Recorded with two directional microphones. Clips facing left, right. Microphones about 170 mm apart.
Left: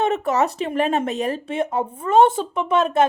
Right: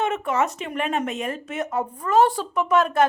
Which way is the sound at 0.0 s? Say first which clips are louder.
Left 3 dB; 35° left (ahead or behind).